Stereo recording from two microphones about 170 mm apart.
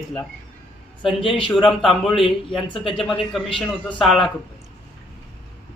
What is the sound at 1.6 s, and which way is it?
A man's voice, centre (ahead or behind).